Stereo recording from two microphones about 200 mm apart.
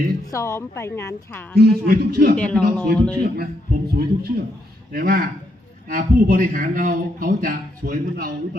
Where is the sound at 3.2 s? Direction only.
50° right (ahead or behind).